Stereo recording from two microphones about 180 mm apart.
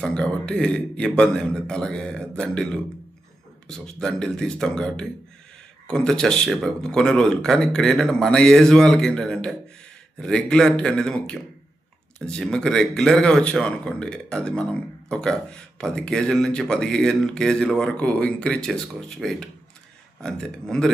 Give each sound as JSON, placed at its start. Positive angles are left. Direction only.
{"t": 0.0, "sound": "speech", "side_deg": 5}